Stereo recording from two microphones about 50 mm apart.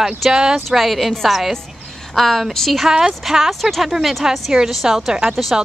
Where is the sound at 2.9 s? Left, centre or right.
Centre.